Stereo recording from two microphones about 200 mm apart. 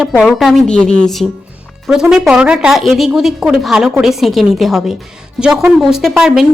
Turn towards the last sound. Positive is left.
turn(degrees=0)  # may be behind; listen again after turning